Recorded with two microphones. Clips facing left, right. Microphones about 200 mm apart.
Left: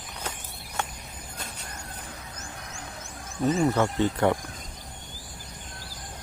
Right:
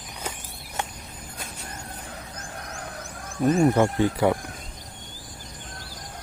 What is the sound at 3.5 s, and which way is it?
Speech, 10° right (ahead or behind).